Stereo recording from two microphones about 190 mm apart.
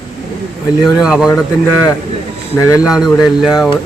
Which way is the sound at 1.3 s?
20° left (ahead or behind).